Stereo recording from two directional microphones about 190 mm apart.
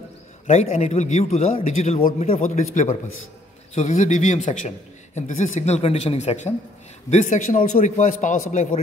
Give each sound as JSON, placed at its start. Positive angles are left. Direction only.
{"t": 0.5, "sound": "a man's voice", "side_deg": 35}